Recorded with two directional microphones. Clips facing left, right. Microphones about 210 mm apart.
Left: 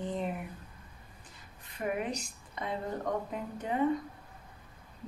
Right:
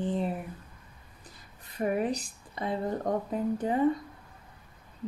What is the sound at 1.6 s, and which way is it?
Speech, 35° right (ahead or behind).